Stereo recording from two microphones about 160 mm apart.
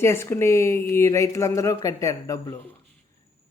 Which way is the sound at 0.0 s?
15° left (ahead or behind).